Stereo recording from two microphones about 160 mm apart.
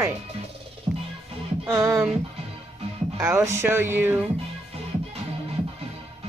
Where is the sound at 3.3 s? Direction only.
15° right (ahead or behind).